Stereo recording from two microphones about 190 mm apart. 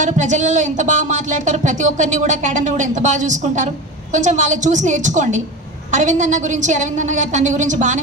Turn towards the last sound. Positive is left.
turn(degrees=-40)  # may be behind; listen again after turning